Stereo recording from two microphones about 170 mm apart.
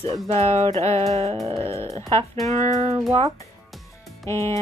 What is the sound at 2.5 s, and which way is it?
Speech, 40° right (ahead or behind).